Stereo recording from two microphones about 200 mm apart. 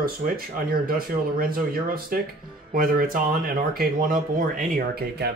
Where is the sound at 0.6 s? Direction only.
45° right (ahead or behind).